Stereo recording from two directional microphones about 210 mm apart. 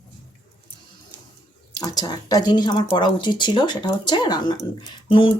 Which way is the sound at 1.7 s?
20° left (ahead or behind).